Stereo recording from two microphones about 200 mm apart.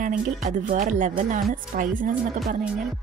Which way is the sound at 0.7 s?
40° right (ahead or behind).